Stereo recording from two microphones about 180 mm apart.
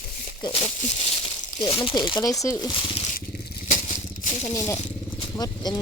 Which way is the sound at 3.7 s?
40° left (ahead or behind).